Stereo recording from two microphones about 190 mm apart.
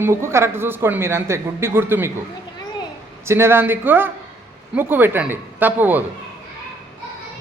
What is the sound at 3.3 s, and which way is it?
Speech, 15° right (ahead or behind).